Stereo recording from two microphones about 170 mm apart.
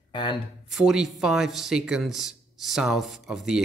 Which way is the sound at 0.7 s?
Centre (ahead or behind).